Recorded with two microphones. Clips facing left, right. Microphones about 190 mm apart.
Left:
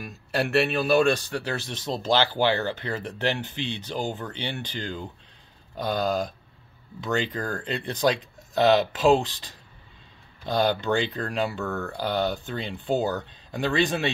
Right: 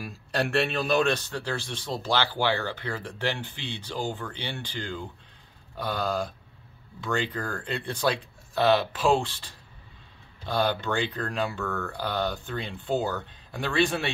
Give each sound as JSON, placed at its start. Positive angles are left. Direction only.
{"t": 0.3, "sound": "speech", "side_deg": 5}
{"t": 10.5, "sound": "speech", "side_deg": 20}